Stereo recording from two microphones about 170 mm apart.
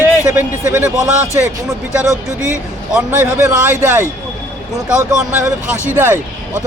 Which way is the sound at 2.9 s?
10° right (ahead or behind).